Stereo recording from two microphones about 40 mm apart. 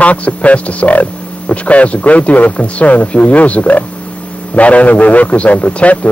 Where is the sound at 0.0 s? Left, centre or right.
Left.